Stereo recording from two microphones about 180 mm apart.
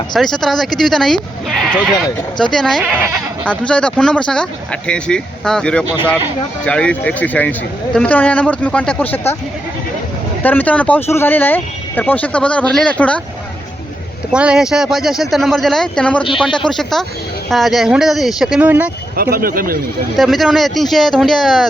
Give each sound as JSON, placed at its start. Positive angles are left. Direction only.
{"t": 0.1, "sound": "speech", "side_deg": 0}
{"t": 10.4, "sound": "speech", "side_deg": 10}
{"t": 14.3, "sound": "speech", "side_deg": -5}
{"t": 19.1, "sound": "speech", "side_deg": -55}
{"t": 20.1, "sound": "speech", "side_deg": 0}